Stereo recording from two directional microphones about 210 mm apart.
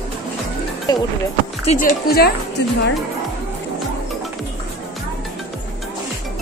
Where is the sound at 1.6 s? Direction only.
40° left (ahead or behind).